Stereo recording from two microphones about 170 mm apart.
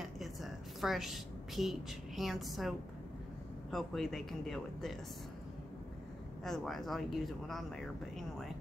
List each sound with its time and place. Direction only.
0.0 s a sound: centre (ahead or behind)
3.7 s speech: centre (ahead or behind)
6.4 s speech: centre (ahead or behind)